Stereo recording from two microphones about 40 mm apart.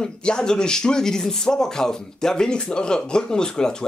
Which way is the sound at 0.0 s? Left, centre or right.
Left.